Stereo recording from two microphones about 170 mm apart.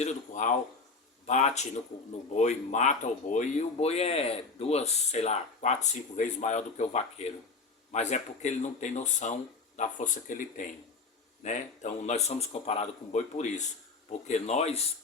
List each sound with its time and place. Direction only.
0.0 s speech: 45° left (ahead or behind)